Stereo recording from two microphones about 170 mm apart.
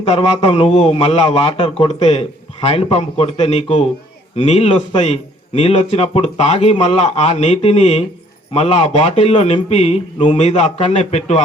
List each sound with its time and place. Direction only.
0.0 s a man's voice: 35° left (ahead or behind)